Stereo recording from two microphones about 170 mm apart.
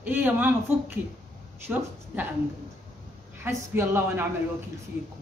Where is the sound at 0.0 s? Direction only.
10° right (ahead or behind).